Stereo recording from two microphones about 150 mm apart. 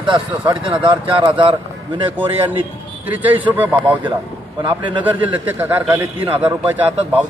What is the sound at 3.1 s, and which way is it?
Speech, 10° right (ahead or behind).